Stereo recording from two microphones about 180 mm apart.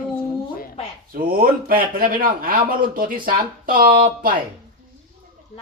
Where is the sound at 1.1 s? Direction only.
55° right (ahead or behind).